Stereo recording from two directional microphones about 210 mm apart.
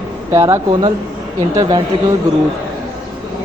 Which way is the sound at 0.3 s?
15° right (ahead or behind).